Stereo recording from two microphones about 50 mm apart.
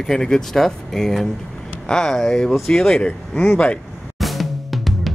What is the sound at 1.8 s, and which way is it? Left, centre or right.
Speech, centre.